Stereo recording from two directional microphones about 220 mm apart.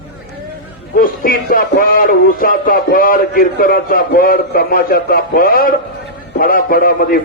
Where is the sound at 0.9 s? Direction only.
40° left (ahead or behind).